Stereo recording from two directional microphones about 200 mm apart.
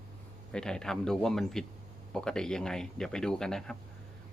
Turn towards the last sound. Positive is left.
turn(degrees=5)  # may be behind; listen again after turning